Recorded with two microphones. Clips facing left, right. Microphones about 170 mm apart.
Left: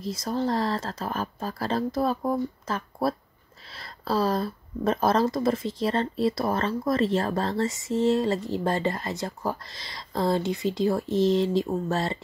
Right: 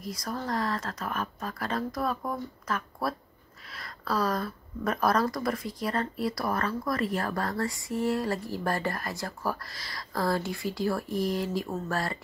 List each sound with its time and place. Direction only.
0.0 s speech: 25° left (ahead or behind)